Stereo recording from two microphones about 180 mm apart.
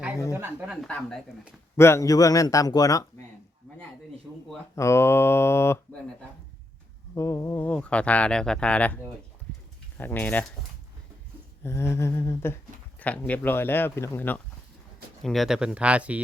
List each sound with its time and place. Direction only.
0.3 s speech: 15° right (ahead or behind)
0.8 s a man's voice: 5° left (ahead or behind)
4.7 s speech: 15° left (ahead or behind)
7.2 s speech: 15° left (ahead or behind)
10.0 s speech: 10° left (ahead or behind)
11.6 s speech: 15° left (ahead or behind); by 16.2 s 5° right (ahead or behind)